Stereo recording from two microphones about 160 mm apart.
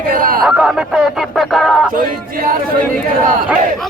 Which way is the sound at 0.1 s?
65° right (ahead or behind).